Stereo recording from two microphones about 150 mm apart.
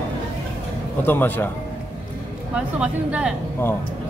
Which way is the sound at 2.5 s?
10° right (ahead or behind).